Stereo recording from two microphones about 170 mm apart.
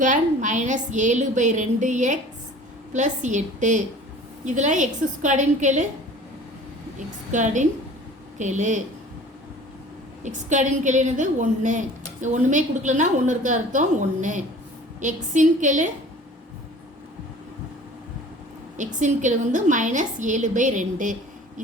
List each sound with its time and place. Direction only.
0.0 s a woman's voice: 45° right (ahead or behind)
7.3 s a woman's voice: 45° right (ahead or behind)
10.2 s a woman's voice: 45° right (ahead or behind)
18.8 s a woman's voice: 45° right (ahead or behind)